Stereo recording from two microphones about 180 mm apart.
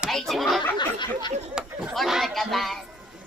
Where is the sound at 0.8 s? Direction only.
25° left (ahead or behind).